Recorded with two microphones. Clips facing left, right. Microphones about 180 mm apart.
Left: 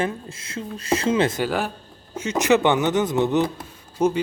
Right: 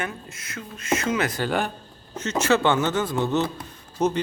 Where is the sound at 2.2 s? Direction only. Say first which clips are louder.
Left 3 dB; 15° left (ahead or behind).